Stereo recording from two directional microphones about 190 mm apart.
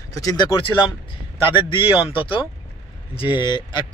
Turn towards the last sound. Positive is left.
turn(degrees=25)  # may be behind; listen again after turning